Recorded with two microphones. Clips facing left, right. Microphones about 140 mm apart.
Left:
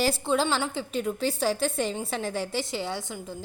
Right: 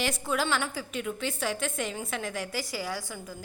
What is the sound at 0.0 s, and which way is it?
A woman's voice, 30° left (ahead or behind).